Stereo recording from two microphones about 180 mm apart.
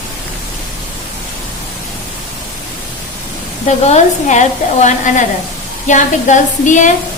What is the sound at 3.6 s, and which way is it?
A woman's voice, 40° left (ahead or behind).